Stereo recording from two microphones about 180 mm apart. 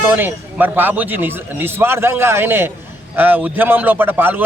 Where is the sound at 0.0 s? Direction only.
10° right (ahead or behind).